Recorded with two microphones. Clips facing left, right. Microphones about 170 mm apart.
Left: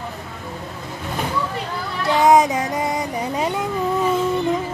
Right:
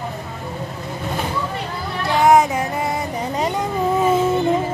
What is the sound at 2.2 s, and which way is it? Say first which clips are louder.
Child singing: right 1 dB; 20° left (ahead or behind).